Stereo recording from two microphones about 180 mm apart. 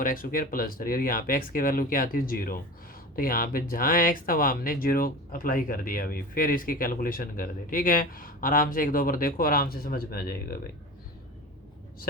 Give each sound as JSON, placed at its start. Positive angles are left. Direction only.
{"t": 0.0, "sound": "speech", "side_deg": 50}